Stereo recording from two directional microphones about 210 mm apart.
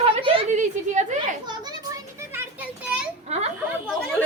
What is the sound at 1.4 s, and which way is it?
Children playing, 20° right (ahead or behind).